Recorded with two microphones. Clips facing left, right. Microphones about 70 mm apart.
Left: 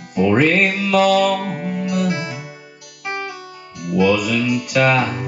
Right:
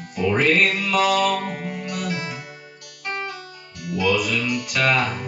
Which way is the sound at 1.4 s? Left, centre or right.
Centre.